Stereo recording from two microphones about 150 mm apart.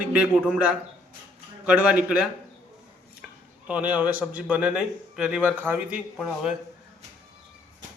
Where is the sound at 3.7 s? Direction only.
10° right (ahead or behind).